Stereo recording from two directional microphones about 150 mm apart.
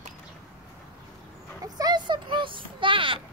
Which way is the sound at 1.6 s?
25° right (ahead or behind).